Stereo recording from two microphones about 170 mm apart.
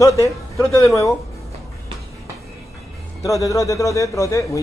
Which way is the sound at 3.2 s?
20° left (ahead or behind).